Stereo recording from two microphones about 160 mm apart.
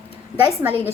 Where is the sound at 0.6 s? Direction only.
15° right (ahead or behind).